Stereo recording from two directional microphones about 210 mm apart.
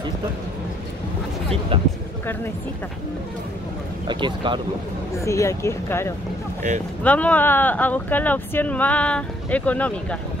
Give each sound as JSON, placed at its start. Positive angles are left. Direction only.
{"t": 1.7, "sound": "speech", "side_deg": -25}
{"t": 4.1, "sound": "speech", "side_deg": -20}
{"t": 5.1, "sound": "speech", "side_deg": 15}